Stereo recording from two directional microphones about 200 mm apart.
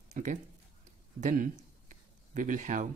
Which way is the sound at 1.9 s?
40° right (ahead or behind).